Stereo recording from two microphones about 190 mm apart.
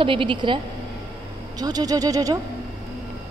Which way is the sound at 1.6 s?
20° right (ahead or behind).